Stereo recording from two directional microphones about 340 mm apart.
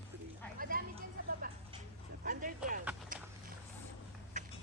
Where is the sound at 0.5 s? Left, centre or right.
Right.